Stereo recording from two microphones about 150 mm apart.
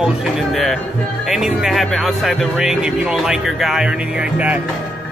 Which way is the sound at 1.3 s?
Centre (ahead or behind).